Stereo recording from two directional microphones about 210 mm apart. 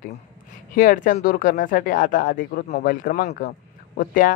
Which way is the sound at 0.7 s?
40° left (ahead or behind).